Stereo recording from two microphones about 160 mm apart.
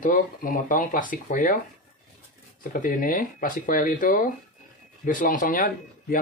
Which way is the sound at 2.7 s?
60° left (ahead or behind).